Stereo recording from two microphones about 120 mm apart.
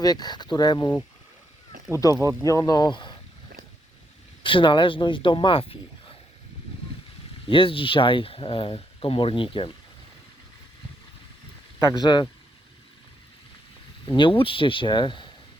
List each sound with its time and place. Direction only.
0.0 s speech: 35° left (ahead or behind)
2.0 s speech: 30° left (ahead or behind)
4.4 s speech: 45° left (ahead or behind)
7.4 s speech: 50° left (ahead or behind)
11.9 s speech: 40° left (ahead or behind)
14.1 s speech: 45° left (ahead or behind)